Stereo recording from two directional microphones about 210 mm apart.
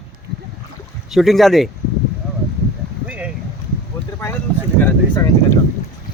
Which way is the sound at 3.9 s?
10° left (ahead or behind).